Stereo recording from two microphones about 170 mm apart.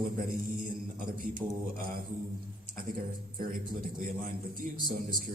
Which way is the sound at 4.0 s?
55° right (ahead or behind).